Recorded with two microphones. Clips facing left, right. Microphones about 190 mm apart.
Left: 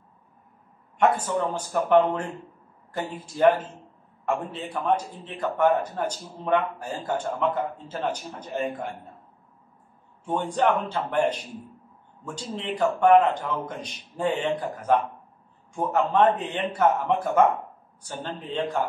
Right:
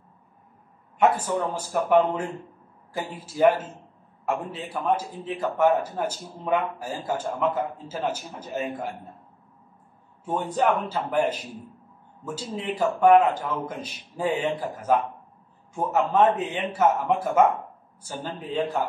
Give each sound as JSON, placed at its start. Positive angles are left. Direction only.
{"t": 0.9, "sound": "a man's voice", "side_deg": -5}
{"t": 3.3, "sound": "a man's voice", "side_deg": -5}
{"t": 10.2, "sound": "a man's voice", "side_deg": -5}